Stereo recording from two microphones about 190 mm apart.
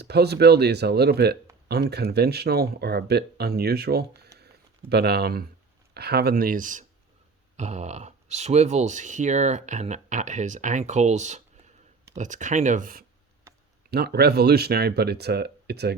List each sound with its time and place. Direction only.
0.0 s speech: 60° right (ahead or behind)
4.4 s a sound: 60° right (ahead or behind)
5.9 s speech: 60° right (ahead or behind)